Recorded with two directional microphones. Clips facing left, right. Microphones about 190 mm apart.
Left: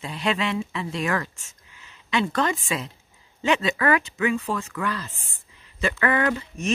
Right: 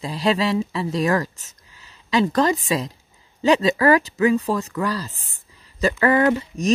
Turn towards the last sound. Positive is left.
turn(degrees=-30)  # may be behind; listen again after turning